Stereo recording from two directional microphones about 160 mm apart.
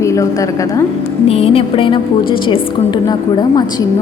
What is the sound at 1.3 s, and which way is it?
A woman's voice, 40° left (ahead or behind).